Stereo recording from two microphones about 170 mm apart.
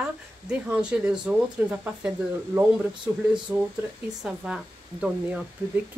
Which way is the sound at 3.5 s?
20° right (ahead or behind).